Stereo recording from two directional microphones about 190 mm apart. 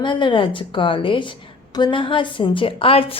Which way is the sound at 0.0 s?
25° left (ahead or behind).